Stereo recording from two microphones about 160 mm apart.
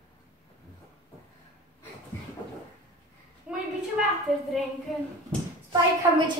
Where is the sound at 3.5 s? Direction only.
5° right (ahead or behind).